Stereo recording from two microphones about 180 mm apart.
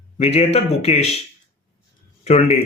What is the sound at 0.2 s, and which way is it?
Speech, 35° left (ahead or behind).